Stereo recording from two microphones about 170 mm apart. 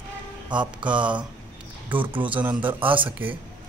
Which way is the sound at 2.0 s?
30° right (ahead or behind).